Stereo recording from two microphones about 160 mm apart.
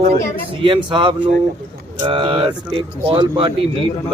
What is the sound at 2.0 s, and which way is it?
Speech, 30° right (ahead or behind).